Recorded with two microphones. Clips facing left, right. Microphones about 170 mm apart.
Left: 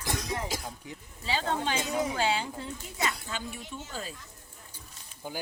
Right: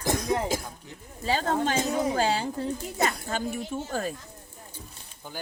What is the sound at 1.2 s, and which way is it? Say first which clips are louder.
Speech: right 5 dB; 45° right (ahead or behind).